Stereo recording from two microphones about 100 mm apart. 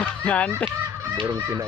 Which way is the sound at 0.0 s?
10° left (ahead or behind).